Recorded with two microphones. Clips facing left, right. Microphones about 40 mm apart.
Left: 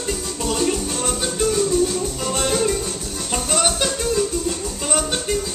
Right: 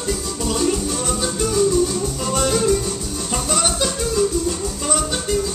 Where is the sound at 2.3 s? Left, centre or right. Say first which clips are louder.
Right 3 dB; left.